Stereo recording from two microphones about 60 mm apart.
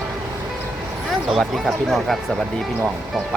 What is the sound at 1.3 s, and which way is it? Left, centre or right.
Speech, centre.